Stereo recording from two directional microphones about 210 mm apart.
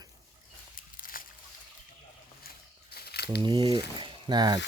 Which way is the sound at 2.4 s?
50° left (ahead or behind).